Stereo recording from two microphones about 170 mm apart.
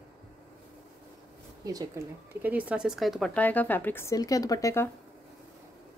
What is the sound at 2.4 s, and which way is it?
Speech, 10° right (ahead or behind).